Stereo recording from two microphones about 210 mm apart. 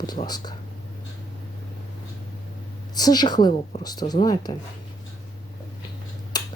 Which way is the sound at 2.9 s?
20° left (ahead or behind).